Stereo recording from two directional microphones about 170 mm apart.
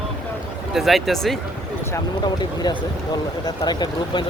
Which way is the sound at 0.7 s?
Centre (ahead or behind).